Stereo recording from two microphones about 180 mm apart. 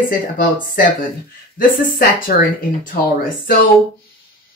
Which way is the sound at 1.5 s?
55° left (ahead or behind).